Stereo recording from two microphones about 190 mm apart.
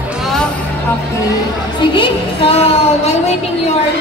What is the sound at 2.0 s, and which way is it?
A woman's voice, 30° left (ahead or behind).